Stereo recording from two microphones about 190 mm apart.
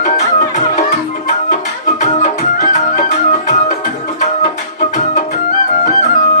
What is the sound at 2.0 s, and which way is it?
Music, 35° left (ahead or behind).